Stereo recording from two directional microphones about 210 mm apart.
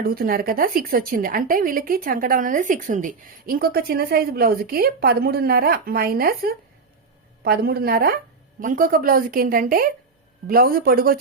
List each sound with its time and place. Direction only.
0.0 s a woman's voice: 45° right (ahead or behind)